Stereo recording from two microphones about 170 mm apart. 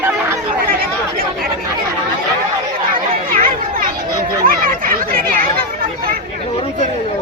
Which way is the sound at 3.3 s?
55° right (ahead or behind).